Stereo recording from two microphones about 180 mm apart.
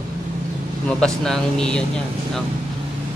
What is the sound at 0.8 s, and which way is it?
Speech, 5° left (ahead or behind).